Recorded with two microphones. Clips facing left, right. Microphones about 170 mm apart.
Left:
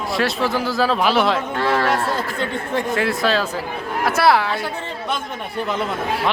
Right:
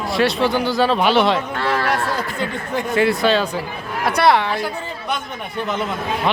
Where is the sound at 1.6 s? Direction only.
30° left (ahead or behind).